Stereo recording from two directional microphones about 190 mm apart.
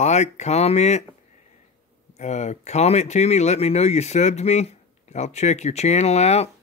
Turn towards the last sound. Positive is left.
turn(degrees=35)  # may be behind; listen again after turning